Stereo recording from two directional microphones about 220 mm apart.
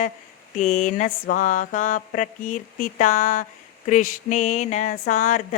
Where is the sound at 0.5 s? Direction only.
35° left (ahead or behind).